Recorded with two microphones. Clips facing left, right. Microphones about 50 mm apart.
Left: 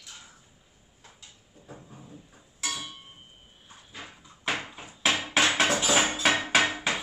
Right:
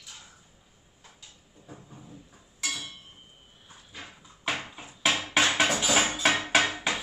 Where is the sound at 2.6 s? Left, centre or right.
Centre.